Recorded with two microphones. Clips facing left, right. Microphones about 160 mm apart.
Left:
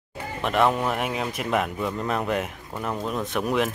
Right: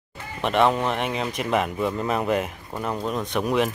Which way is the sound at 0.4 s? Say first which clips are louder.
Right 2 dB; centre (ahead or behind).